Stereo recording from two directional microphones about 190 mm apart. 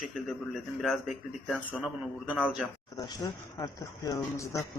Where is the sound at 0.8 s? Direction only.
Centre (ahead or behind).